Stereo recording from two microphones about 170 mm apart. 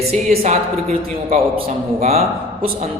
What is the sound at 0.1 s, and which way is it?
A woman's voice, 40° right (ahead or behind).